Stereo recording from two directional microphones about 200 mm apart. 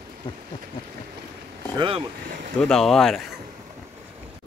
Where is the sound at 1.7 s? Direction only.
25° right (ahead or behind).